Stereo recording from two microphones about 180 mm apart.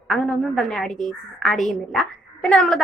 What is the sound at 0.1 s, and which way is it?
A woman's voice, centre (ahead or behind).